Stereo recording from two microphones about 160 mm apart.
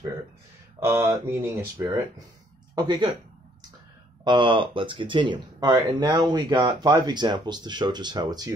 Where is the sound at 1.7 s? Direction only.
30° right (ahead or behind).